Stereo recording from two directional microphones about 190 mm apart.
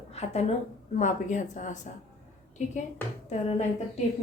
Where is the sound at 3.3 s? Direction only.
35° left (ahead or behind).